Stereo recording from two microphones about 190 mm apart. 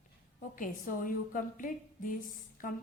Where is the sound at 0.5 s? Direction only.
45° left (ahead or behind).